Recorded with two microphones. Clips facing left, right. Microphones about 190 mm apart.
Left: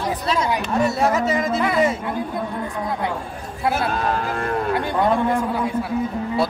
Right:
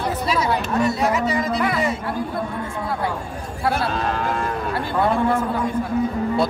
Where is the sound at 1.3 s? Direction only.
25° left (ahead or behind).